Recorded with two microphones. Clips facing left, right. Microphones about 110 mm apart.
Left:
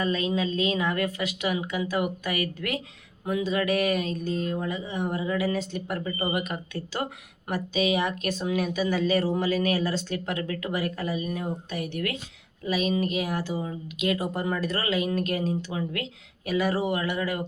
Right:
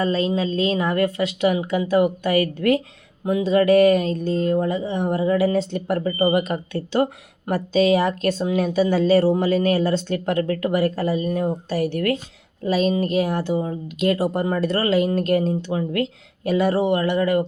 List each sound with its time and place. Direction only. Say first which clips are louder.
0.0 s speech: right 5 dB; 30° right (ahead or behind)